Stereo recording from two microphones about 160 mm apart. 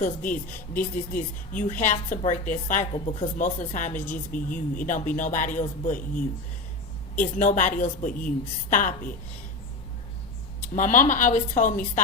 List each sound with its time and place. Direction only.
0.0 s a woman's voice: 55° left (ahead or behind)
10.8 s speech: 55° left (ahead or behind)